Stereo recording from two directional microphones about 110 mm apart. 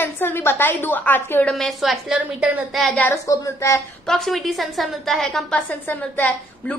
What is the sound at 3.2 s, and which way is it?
Speech, 30° left (ahead or behind).